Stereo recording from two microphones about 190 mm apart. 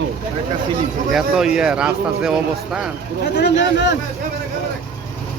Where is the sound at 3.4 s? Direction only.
65° left (ahead or behind).